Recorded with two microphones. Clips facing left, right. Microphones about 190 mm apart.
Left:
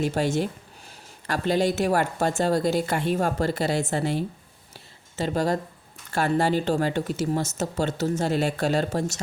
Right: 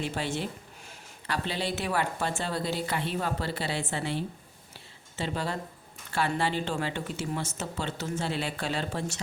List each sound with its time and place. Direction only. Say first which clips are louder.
0.0 s speech: left 8 dB; 45° left (ahead or behind)